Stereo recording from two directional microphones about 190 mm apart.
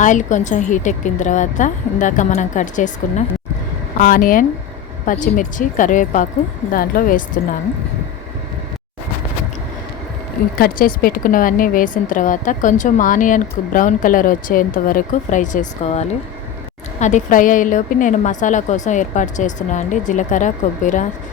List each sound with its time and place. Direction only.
0.0 s a woman's voice: 40° left (ahead or behind)
10.6 s a woman's voice: 50° left (ahead or behind)